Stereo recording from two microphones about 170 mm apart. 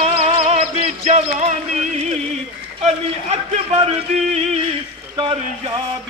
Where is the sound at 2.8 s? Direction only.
40° right (ahead or behind).